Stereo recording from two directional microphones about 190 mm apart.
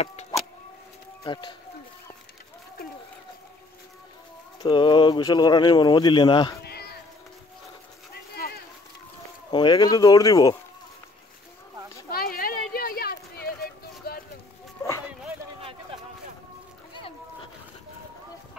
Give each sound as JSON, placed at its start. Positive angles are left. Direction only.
{"t": 0.0, "sound": "vehicle", "side_deg": 35}
{"t": 1.2, "sound": "speech", "side_deg": 25}
{"t": 4.6, "sound": "speech", "side_deg": 25}
{"t": 6.6, "sound": "cat", "side_deg": 55}
{"t": 8.1, "sound": "a sound", "side_deg": 55}
{"t": 9.5, "sound": "speech", "side_deg": 25}
{"t": 12.1, "sound": "a sound", "side_deg": 50}